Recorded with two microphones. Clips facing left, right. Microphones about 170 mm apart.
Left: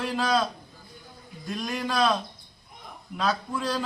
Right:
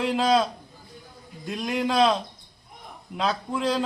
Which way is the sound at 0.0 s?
20° right (ahead or behind).